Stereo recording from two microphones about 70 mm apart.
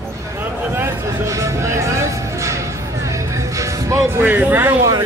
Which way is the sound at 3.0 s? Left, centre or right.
Right.